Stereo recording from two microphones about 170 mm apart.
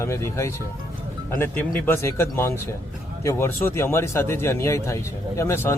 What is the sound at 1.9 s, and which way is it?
A man's voice, 15° left (ahead or behind).